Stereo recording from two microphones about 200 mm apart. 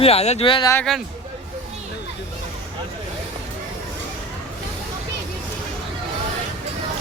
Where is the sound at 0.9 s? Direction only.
Centre (ahead or behind).